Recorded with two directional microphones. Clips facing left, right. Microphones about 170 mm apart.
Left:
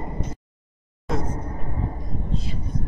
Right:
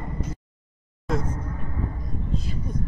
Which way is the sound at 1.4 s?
30° left (ahead or behind).